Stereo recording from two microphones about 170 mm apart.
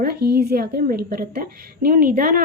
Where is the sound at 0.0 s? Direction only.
65° right (ahead or behind).